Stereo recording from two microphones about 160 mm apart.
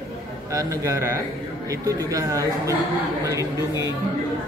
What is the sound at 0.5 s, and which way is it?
Speech, 20° right (ahead or behind).